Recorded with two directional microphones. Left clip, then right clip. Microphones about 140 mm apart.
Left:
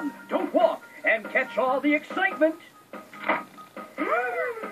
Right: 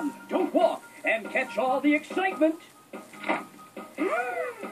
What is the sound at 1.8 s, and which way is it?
Speech, 35° right (ahead or behind).